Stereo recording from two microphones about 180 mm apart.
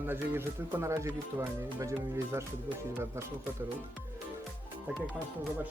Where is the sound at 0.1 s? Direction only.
15° right (ahead or behind).